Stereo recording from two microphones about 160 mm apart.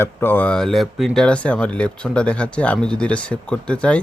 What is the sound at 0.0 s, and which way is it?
Speech, 15° left (ahead or behind).